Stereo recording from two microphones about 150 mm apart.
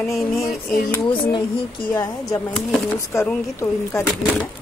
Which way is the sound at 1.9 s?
25° left (ahead or behind).